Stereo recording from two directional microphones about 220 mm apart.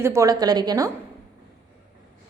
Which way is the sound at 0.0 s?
15° right (ahead or behind).